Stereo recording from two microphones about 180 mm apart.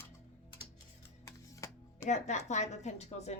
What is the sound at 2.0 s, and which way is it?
Speech, 40° left (ahead or behind).